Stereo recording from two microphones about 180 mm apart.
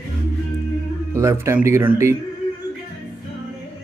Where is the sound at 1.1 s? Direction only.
15° right (ahead or behind).